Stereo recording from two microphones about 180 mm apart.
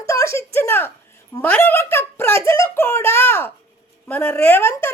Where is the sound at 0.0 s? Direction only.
15° left (ahead or behind).